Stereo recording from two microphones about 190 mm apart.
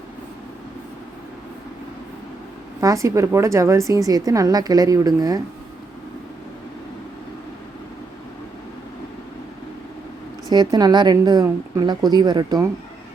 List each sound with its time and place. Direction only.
2.8 s a woman's voice: 15° right (ahead or behind)
10.5 s a woman's voice: 20° right (ahead or behind)